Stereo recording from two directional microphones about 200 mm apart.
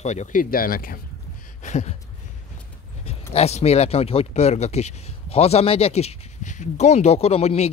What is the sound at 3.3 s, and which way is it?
Speech, 30° left (ahead or behind).